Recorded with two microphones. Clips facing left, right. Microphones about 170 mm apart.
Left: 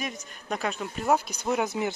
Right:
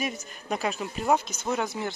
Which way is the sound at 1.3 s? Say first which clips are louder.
Left 2 dB; 15° left (ahead or behind).